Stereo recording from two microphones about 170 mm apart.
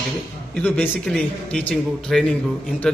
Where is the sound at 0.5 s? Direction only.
5° left (ahead or behind).